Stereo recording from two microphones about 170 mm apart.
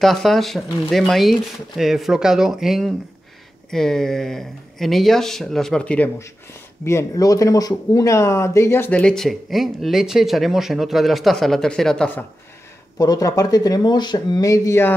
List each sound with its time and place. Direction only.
0.0 s speech: centre (ahead or behind)
12.9 s speech: 20° left (ahead or behind)